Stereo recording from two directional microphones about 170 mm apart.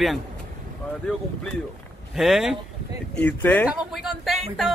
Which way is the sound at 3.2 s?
10° left (ahead or behind).